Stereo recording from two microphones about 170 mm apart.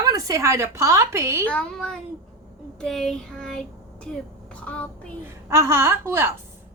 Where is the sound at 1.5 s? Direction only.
5° left (ahead or behind).